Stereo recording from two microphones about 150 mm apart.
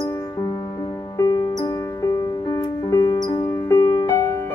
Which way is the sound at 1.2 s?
25° left (ahead or behind).